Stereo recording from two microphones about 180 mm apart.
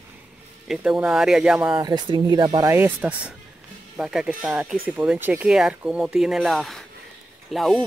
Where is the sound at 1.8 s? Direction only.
20° right (ahead or behind).